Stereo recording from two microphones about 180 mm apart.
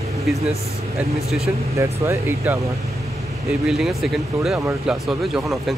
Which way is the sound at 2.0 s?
15° right (ahead or behind).